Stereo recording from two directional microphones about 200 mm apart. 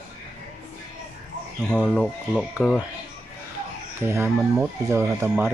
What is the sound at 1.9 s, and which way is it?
Speech, centre (ahead or behind).